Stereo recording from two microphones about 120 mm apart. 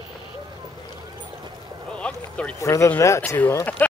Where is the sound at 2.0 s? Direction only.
10° left (ahead or behind).